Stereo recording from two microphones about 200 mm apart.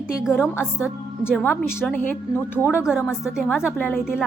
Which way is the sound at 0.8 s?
5° right (ahead or behind).